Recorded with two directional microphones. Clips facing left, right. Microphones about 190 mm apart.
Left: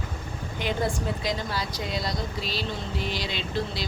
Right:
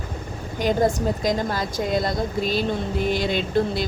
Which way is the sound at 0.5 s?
45° right (ahead or behind).